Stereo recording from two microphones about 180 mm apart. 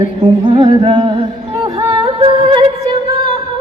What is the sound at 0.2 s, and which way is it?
Music, 25° right (ahead or behind).